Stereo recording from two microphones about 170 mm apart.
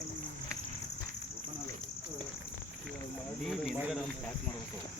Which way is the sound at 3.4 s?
Centre (ahead or behind).